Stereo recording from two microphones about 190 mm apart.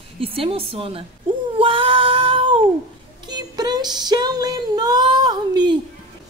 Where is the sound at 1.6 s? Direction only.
25° right (ahead or behind).